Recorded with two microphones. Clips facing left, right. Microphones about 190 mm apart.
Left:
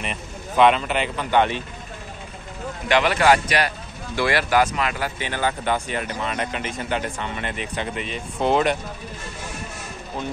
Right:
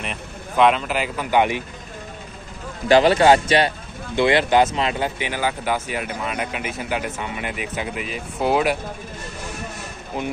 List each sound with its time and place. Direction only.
0.0 s speech: centre (ahead or behind)
2.9 s speech: 30° right (ahead or behind)
5.3 s speech: 10° right (ahead or behind)
10.2 s speech: 15° right (ahead or behind)